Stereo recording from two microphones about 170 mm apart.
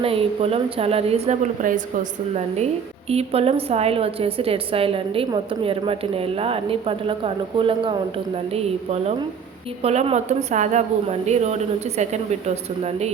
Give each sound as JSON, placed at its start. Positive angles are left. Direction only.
{"t": 0.0, "sound": "a woman's voice", "side_deg": -35}
{"t": 1.6, "sound": "a woman's voice", "side_deg": -55}
{"t": 3.1, "sound": "a woman's voice", "side_deg": -35}